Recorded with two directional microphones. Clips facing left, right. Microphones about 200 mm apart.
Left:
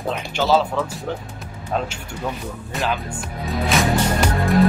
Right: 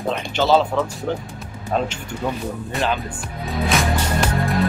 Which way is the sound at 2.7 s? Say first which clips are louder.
Right 1 dB; centre (ahead or behind).